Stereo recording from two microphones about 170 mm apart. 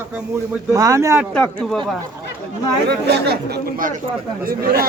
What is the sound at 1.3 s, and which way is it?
Speech, 5° left (ahead or behind).